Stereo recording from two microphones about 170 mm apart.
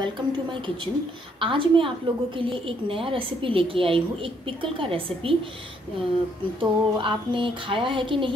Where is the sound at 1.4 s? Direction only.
30° right (ahead or behind).